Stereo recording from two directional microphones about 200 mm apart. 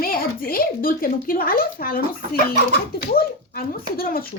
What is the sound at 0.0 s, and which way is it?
Speech, 45° left (ahead or behind).